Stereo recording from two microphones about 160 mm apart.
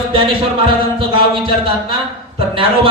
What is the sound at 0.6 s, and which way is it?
Music, 35° right (ahead or behind).